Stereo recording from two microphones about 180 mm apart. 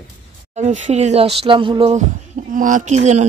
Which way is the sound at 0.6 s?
40° right (ahead or behind).